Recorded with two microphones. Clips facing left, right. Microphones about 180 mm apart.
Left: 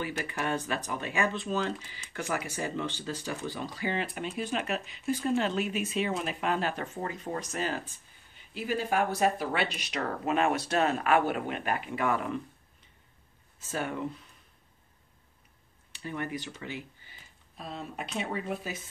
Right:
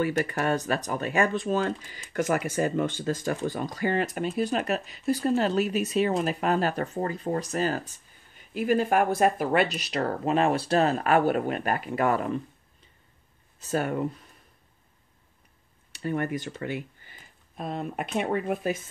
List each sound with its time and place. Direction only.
0.0 s speech: 45° right (ahead or behind)
13.7 s speech: 45° right (ahead or behind)
15.9 s speech: 50° right (ahead or behind)